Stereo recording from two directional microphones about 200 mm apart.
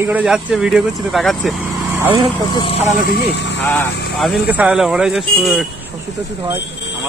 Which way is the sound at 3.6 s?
10° left (ahead or behind).